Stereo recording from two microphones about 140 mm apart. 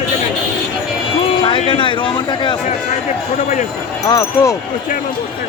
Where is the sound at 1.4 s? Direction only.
35° left (ahead or behind).